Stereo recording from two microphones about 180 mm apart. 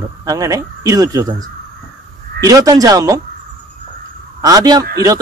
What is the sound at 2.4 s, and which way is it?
Speech, 20° right (ahead or behind).